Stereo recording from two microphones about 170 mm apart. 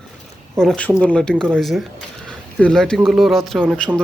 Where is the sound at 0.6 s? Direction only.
5° left (ahead or behind).